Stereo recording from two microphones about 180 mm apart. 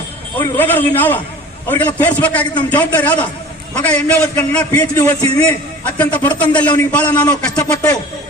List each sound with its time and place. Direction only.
0.3 s a man's voice: 10° left (ahead or behind)
7.3 s speech: 20° left (ahead or behind)